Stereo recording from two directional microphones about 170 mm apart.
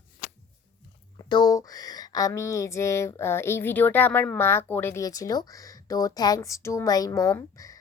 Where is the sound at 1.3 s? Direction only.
25° left (ahead or behind).